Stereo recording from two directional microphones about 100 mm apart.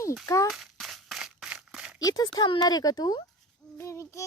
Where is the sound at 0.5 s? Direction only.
Centre (ahead or behind).